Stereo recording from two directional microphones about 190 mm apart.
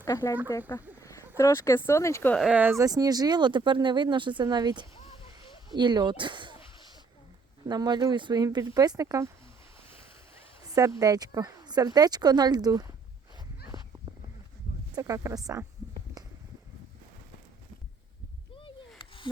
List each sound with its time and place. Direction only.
0.0 s speech: 20° left (ahead or behind)
1.4 s speech: 15° left (ahead or behind)
2.3 s speech: 5° right (ahead or behind); by 6.6 s 25° right (ahead or behind)
7.7 s speech: 20° right (ahead or behind)
10.7 s speech: 15° right (ahead or behind)
13.7 s a sound: 20° right (ahead or behind)
14.9 s speech: 15° right (ahead or behind)
18.9 s a sound: 25° left (ahead or behind)